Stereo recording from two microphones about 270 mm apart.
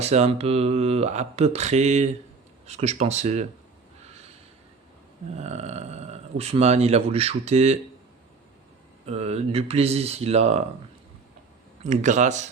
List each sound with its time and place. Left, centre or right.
0.0 s speech: right
5.4 s speech: right
9.0 s speech: right
11.8 s speech: right